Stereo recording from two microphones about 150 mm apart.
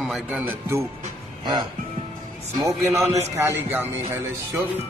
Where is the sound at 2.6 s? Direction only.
20° right (ahead or behind).